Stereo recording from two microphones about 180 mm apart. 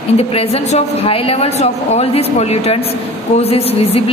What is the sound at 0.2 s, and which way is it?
A woman's voice, 35° left (ahead or behind).